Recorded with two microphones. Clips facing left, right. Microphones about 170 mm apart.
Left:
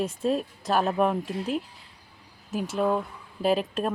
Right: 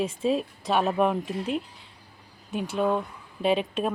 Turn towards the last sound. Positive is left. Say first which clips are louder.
# even
turn(degrees=0)  # may be behind; listen again after turning